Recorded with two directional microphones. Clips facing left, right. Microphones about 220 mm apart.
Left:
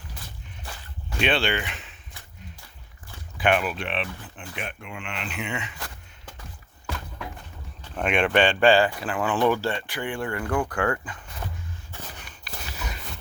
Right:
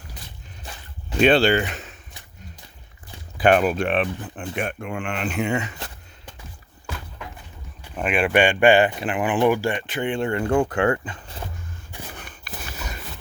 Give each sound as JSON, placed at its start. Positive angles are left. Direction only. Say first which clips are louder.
{"t": 1.2, "sound": "speech", "louder": "right 8 dB", "side_deg": -40}
{"t": 3.3, "sound": "speech", "louder": "right 6 dB", "side_deg": -40}
{"t": 7.8, "sound": "speech", "louder": "right 1 dB", "side_deg": -5}
{"t": 12.1, "sound": "walk", "louder": "right 5 dB", "side_deg": -55}